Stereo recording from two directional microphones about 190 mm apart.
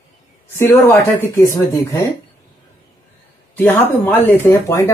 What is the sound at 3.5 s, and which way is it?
Speech, 10° left (ahead or behind).